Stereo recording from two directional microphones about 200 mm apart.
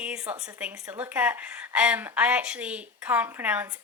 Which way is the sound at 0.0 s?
5° right (ahead or behind).